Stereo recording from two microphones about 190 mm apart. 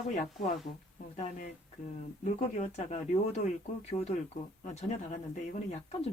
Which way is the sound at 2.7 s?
35° left (ahead or behind).